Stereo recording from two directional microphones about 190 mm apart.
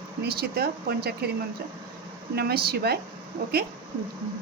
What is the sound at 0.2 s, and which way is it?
A woman's voice, 55° right (ahead or behind).